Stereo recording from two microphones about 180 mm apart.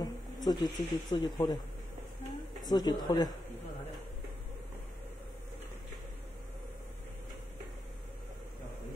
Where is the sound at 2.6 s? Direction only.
20° left (ahead or behind).